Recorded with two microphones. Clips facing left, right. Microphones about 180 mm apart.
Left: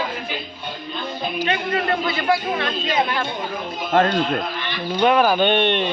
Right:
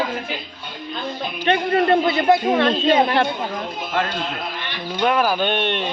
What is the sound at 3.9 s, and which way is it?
Speech, 50° left (ahead or behind).